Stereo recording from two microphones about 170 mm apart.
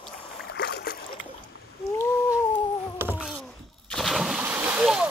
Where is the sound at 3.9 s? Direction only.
Centre (ahead or behind).